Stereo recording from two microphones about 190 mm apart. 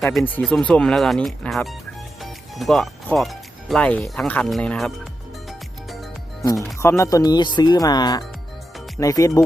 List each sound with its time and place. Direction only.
0.0 s speech: centre (ahead or behind)
5.5 s music: centre (ahead or behind)
6.7 s speech: 15° left (ahead or behind)